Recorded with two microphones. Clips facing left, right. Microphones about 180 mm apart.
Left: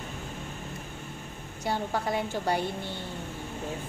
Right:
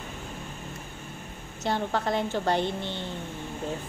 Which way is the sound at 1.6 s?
10° left (ahead or behind).